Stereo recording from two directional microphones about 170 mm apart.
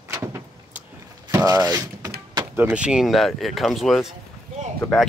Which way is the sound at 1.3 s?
20° right (ahead or behind).